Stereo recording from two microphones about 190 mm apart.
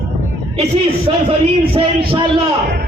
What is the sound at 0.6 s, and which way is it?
Speech, 30° right (ahead or behind).